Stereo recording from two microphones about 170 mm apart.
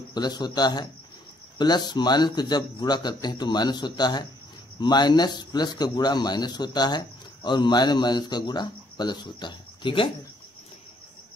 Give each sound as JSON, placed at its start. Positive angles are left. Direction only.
{"t": 0.1, "sound": "speech", "side_deg": 25}